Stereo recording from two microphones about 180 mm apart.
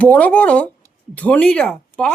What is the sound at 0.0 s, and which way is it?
Speech, 10° left (ahead or behind).